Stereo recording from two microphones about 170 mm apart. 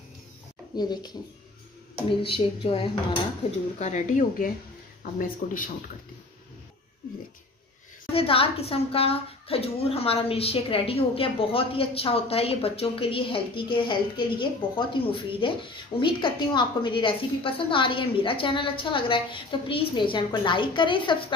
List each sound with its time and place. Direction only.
0.7 s a woman's voice: 25° left (ahead or behind)
3.8 s speech: 50° left (ahead or behind)
8.1 s a woman's voice: 35° left (ahead or behind)